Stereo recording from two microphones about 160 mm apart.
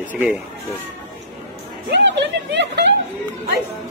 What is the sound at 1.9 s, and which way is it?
A woman's voice, 90° right.